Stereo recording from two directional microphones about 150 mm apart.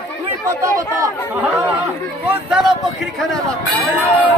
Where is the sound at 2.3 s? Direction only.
5° right (ahead or behind).